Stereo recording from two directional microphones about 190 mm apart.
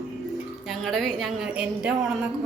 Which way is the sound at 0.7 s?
Centre (ahead or behind).